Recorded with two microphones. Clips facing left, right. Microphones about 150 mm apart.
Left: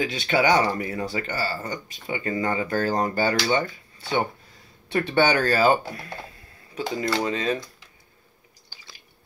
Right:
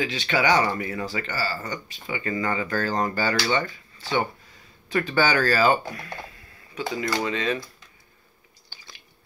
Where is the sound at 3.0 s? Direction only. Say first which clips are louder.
Left 2 dB; 45° left (ahead or behind).